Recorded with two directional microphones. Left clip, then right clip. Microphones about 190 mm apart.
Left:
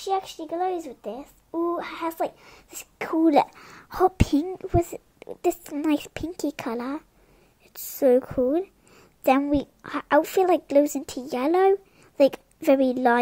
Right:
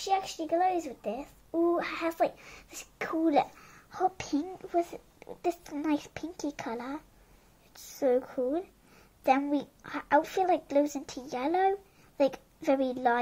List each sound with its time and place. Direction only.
0.0 s a woman's voice: 25° left (ahead or behind); by 13.2 s 45° left (ahead or behind)